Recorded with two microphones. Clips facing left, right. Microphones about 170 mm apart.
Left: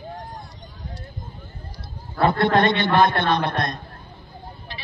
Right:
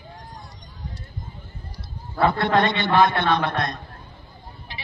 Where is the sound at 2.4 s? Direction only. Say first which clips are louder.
Left 2 dB; 50° left (ahead or behind).